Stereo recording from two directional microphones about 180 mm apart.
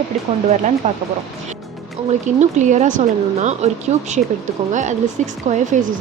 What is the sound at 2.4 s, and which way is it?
Speech, 40° right (ahead or behind).